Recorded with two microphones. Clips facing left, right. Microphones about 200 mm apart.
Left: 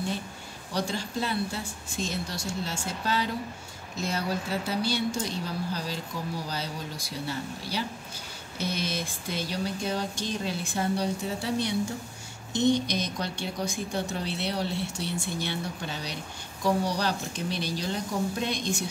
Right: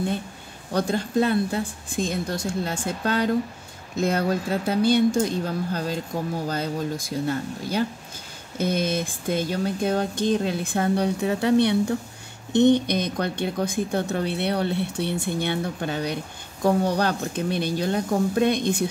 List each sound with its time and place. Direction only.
0.7 s speech: 55° right (ahead or behind)